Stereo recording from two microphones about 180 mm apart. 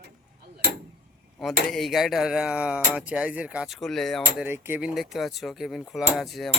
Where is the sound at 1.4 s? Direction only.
Centre (ahead or behind).